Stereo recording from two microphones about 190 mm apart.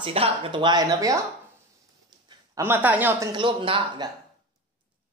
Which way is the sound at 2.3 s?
15° right (ahead or behind).